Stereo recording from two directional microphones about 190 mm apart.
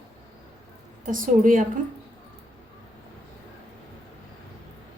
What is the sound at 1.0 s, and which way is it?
Speech, 45° right (ahead or behind).